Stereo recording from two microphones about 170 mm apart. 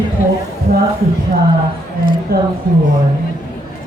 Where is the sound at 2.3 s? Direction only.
65° right (ahead or behind).